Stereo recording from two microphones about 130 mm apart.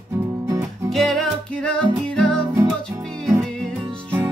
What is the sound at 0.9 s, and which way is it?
Music, centre (ahead or behind).